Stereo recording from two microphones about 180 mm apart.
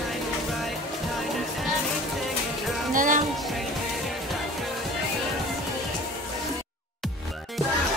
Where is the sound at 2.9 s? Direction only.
45° right (ahead or behind).